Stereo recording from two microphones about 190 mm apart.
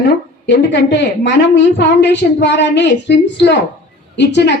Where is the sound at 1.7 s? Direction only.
65° left (ahead or behind).